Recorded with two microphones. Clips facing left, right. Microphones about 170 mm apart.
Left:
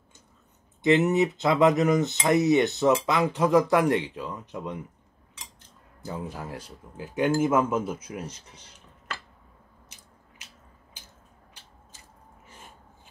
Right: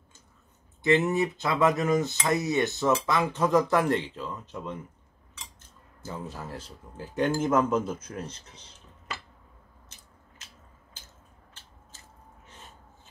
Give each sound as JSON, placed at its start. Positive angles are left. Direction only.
{"t": 0.8, "sound": "speech", "side_deg": 20}
{"t": 6.0, "sound": "speech", "side_deg": 15}
{"t": 11.6, "sound": "a sound", "side_deg": 15}